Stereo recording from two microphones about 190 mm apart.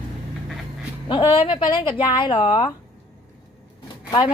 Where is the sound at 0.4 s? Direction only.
Centre (ahead or behind).